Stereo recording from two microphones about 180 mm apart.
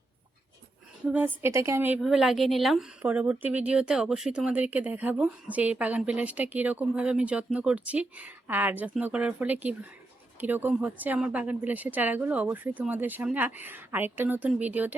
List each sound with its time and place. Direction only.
1.0 s speech: 10° right (ahead or behind)
2.0 s speech: centre (ahead or behind)